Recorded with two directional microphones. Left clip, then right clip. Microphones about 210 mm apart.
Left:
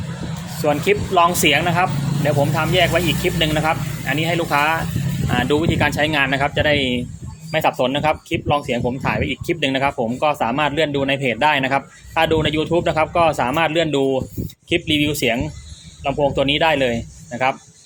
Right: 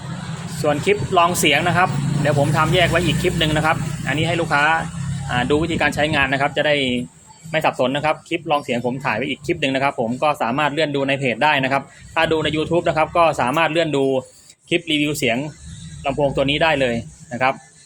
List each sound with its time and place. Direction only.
0.5 s speech: centre (ahead or behind)